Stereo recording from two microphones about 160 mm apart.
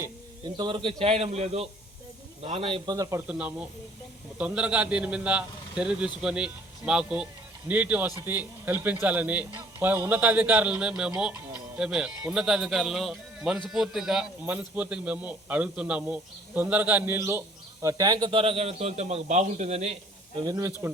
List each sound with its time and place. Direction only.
0.0 s a man's voice: 25° right (ahead or behind)
2.9 s speech: 20° right (ahead or behind)
3.2 s a man's voice: 10° right (ahead or behind); by 19.9 s 45° right (ahead or behind)
20.3 s speech: 25° right (ahead or behind)